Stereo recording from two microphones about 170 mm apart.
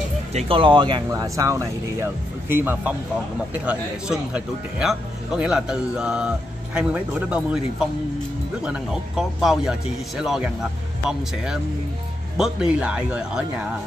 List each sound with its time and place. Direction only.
0.3 s speech: 35° right (ahead or behind); by 13.5 s 5° right (ahead or behind)